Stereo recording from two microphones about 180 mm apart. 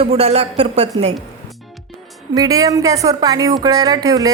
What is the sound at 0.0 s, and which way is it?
Speech, 35° right (ahead or behind).